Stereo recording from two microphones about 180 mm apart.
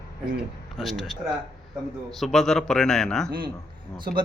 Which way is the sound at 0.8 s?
Centre (ahead or behind).